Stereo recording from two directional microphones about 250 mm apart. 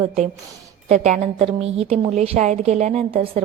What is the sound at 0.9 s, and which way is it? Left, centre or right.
A woman's voice, right.